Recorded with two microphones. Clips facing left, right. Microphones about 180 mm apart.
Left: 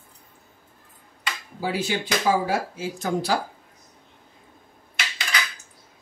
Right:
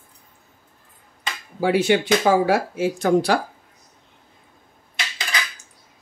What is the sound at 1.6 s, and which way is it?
Speech, 70° right (ahead or behind).